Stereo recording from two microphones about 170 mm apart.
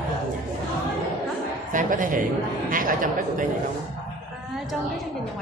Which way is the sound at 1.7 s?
50° right (ahead or behind).